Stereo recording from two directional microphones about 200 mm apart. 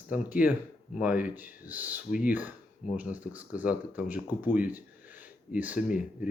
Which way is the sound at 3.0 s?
5° right (ahead or behind).